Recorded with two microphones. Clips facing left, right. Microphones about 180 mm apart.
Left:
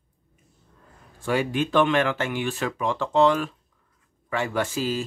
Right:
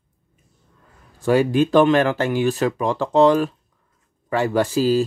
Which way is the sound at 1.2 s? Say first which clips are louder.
Right 8 dB; 40° right (ahead or behind).